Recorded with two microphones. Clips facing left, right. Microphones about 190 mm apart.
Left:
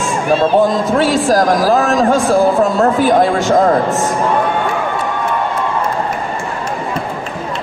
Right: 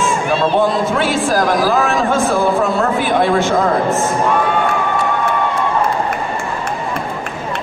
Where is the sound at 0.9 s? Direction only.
40° left (ahead or behind).